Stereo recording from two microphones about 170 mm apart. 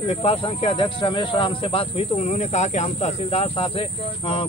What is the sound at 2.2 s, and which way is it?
Speech, 45° left (ahead or behind).